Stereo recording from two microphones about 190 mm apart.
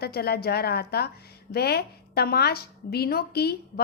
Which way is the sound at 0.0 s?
55° left (ahead or behind).